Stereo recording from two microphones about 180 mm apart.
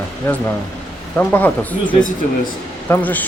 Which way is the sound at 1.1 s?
10° left (ahead or behind).